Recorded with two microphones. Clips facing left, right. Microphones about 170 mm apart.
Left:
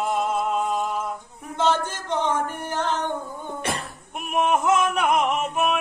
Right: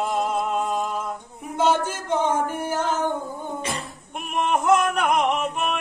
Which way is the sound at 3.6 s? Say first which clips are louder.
Left 1 dB; 65° left (ahead or behind).